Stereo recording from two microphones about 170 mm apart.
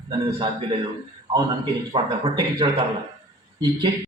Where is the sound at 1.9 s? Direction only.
30° right (ahead or behind).